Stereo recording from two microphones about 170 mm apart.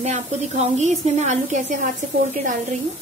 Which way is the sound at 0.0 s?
40° right (ahead or behind).